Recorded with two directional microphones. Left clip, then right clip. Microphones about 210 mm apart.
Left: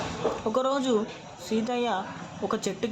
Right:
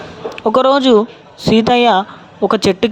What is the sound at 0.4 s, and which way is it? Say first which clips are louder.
Speech: right 18 dB; 45° right (ahead or behind).